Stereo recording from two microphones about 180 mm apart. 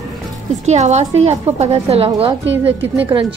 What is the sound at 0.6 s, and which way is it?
A woman's voice, 40° right (ahead or behind).